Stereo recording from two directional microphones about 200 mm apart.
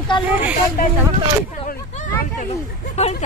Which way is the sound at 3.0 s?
35° left (ahead or behind).